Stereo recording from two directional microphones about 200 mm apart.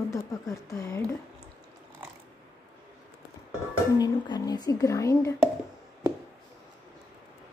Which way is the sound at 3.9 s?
20° left (ahead or behind).